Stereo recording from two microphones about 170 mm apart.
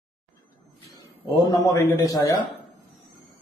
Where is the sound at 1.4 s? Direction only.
20° left (ahead or behind).